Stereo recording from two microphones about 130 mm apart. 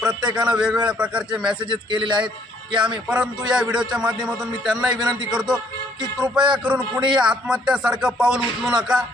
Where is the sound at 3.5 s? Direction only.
5° right (ahead or behind).